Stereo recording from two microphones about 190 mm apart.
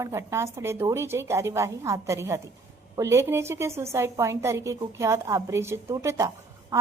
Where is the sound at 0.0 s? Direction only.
15° right (ahead or behind).